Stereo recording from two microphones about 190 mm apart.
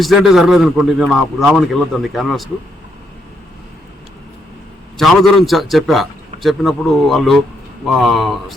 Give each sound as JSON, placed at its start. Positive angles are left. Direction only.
{"t": 0.0, "sound": "a man's voice", "side_deg": 0}
{"t": 4.9, "sound": "a man's voice", "side_deg": 0}